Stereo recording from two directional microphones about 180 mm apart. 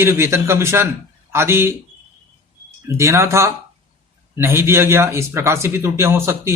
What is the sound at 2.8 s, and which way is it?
A man's voice, 15° right (ahead or behind).